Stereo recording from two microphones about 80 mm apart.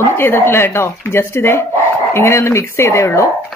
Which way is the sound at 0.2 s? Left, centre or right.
Left.